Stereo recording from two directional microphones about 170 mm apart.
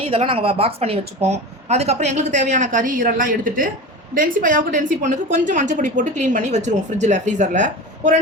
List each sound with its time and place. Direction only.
0.0 s a woman's voice: 35° right (ahead or behind)